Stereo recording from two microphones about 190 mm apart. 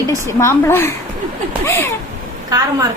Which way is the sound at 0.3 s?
15° left (ahead or behind).